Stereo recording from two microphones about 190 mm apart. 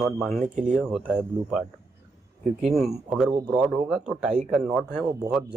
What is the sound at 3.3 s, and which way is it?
Speech, 20° right (ahead or behind).